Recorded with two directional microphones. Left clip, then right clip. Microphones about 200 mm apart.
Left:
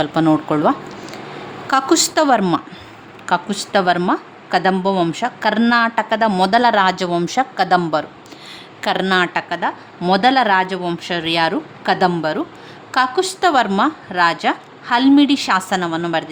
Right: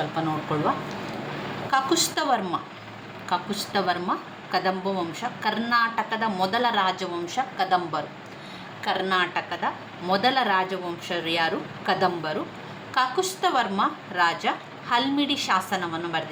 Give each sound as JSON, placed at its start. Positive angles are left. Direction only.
{"t": 0.1, "sound": "a woman's voice", "side_deg": 60}
{"t": 1.7, "sound": "a woman's voice", "side_deg": 55}